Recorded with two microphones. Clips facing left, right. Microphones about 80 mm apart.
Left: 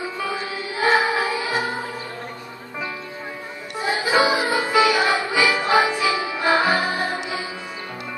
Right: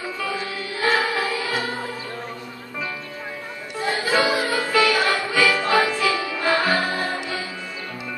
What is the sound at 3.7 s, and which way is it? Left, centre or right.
Music, centre.